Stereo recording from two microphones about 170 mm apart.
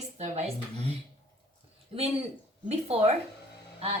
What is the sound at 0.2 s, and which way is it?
Speech, 40° right (ahead or behind).